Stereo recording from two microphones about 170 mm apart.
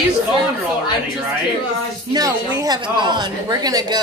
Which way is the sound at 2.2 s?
20° right (ahead or behind).